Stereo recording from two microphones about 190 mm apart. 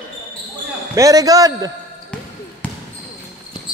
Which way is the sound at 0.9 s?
20° right (ahead or behind).